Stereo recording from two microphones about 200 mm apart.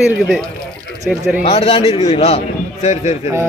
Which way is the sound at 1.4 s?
30° left (ahead or behind).